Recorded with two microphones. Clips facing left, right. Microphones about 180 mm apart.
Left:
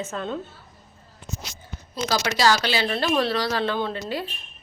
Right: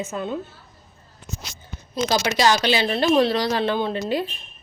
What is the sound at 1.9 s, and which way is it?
Speech, 20° right (ahead or behind).